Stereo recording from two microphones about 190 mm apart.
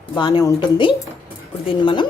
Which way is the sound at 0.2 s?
20° left (ahead or behind).